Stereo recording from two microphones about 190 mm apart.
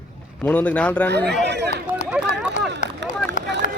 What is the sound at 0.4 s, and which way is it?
Speech, 10° left (ahead or behind).